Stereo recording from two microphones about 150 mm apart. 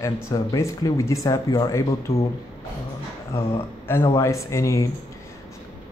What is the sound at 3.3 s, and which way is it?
A man's voice, 20° left (ahead or behind).